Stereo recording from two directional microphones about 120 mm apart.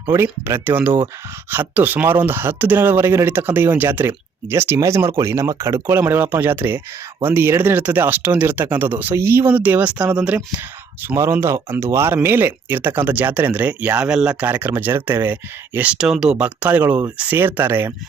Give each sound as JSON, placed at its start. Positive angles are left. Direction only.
{"t": 0.1, "sound": "speech", "side_deg": -20}